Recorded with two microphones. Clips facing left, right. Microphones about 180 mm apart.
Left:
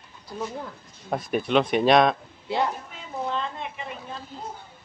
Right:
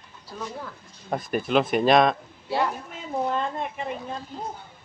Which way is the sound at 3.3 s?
45° right (ahead or behind).